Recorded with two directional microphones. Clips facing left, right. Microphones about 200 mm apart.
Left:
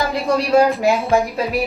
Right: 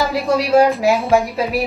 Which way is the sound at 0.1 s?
Centre (ahead or behind).